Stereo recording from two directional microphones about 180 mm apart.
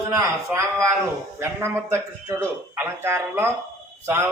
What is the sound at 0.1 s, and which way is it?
Speech, 15° right (ahead or behind).